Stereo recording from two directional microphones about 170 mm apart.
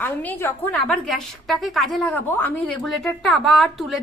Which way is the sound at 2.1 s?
10° left (ahead or behind).